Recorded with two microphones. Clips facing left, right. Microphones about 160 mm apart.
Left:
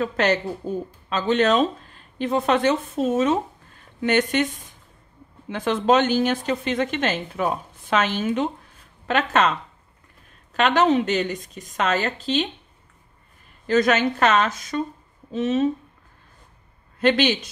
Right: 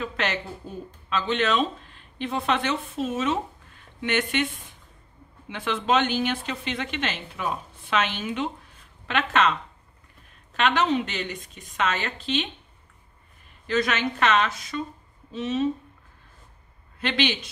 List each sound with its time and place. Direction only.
0.0 s a woman's voice: 40° left (ahead or behind)
5.5 s a woman's voice: 40° left (ahead or behind)
10.5 s a woman's voice: 45° left (ahead or behind)
13.7 s speech: 45° left (ahead or behind)
17.0 s speech: 45° left (ahead or behind)